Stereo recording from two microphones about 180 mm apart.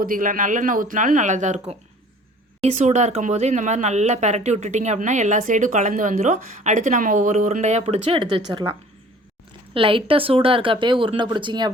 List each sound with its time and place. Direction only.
0.0 s speech: 50° right (ahead or behind); by 8.7 s 30° right (ahead or behind)
9.7 s speech: 30° right (ahead or behind)